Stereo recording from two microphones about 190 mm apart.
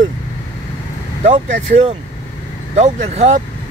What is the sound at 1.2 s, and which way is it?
Speech, 40° right (ahead or behind).